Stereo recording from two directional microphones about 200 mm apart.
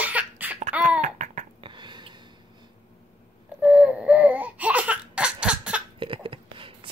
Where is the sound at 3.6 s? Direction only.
5° right (ahead or behind).